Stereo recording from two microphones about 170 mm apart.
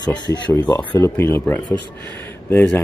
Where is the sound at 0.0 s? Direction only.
25° left (ahead or behind).